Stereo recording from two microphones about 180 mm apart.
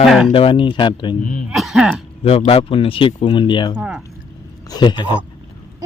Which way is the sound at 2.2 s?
35° left (ahead or behind).